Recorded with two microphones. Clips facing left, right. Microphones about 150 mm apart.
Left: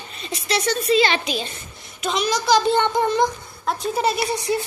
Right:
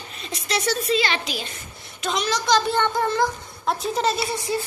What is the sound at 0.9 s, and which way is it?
A woman's voice, 20° left (ahead or behind).